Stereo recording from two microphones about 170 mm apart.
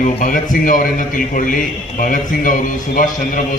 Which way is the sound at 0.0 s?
50° left (ahead or behind).